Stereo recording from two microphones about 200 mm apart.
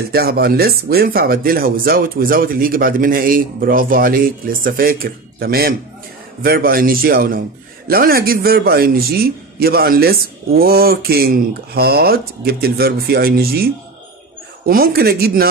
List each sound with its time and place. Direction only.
0.1 s a man's voice: 50° right (ahead or behind)
14.7 s a man's voice: 50° right (ahead or behind)